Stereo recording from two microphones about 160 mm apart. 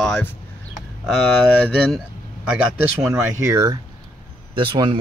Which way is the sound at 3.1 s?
15° right (ahead or behind).